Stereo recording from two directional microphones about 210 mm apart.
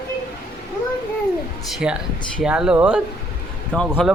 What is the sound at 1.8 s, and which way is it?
A man's voice, 5° right (ahead or behind).